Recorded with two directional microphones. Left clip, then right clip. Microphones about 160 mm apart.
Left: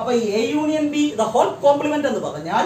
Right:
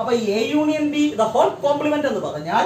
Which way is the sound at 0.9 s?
30° left (ahead or behind).